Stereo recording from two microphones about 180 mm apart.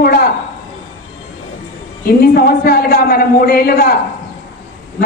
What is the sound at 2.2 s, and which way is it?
A woman's voice, 60° left (ahead or behind).